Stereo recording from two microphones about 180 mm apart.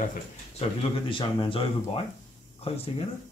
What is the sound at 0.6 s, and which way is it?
Speech, 35° left (ahead or behind).